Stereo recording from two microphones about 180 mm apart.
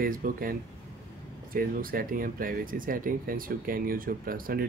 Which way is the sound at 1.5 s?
55° right (ahead or behind).